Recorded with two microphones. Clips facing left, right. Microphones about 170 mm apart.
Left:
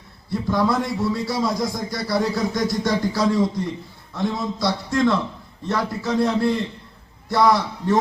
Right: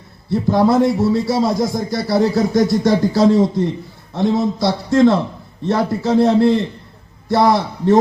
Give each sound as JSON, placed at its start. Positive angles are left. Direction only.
{"t": 0.3, "sound": "speech", "side_deg": -25}